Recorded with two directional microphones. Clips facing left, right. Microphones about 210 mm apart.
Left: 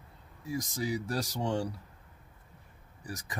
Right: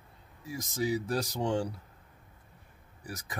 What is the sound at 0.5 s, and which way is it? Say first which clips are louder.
Speech: right 1 dB; 25° right (ahead or behind).